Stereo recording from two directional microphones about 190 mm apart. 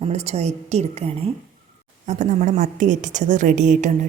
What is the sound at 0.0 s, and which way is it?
A woman's voice, 35° right (ahead or behind).